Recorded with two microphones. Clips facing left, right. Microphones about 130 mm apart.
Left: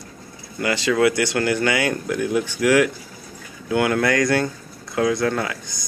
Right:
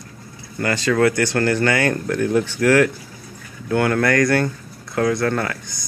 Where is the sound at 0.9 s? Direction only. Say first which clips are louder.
Right 1 dB; 10° left (ahead or behind).